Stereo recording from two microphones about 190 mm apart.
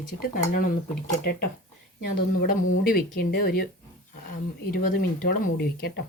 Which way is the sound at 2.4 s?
50° left (ahead or behind).